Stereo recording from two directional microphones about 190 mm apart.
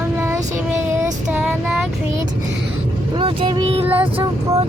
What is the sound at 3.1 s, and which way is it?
Vehicle, 25° right (ahead or behind).